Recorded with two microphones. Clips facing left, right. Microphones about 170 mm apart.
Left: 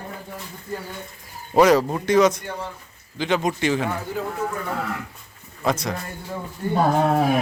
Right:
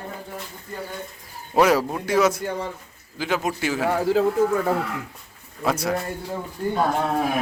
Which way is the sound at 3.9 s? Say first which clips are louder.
Right 8 dB; 90° right.